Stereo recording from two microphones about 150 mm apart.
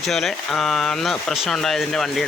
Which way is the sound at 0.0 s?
Centre (ahead or behind).